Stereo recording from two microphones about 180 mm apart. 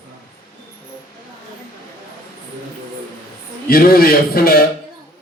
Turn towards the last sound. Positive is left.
turn(degrees=55)  # may be behind; listen again after turning